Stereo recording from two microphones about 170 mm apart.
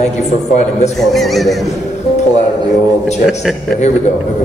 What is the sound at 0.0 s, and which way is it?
Speech, 40° left (ahead or behind).